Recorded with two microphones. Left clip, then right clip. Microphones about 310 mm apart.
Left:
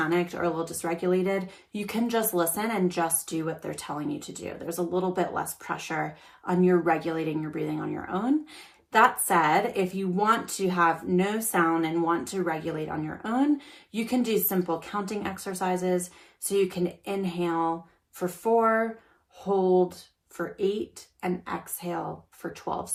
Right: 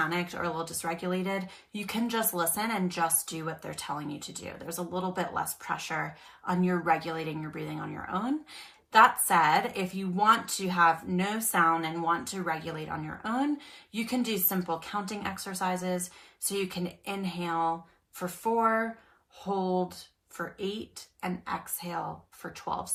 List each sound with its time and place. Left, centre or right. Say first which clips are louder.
0.0 s speech: left 4 dB; centre
5.1 s speech: left 3 dB; centre
19.6 s speech: left 9 dB; right
20.3 s speech: left 7 dB; centre